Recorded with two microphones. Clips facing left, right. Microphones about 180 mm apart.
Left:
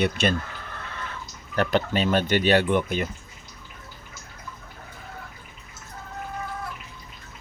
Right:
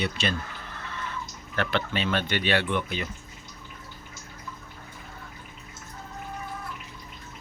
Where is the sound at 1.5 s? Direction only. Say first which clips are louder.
Left 5 dB; 40° left (ahead or behind).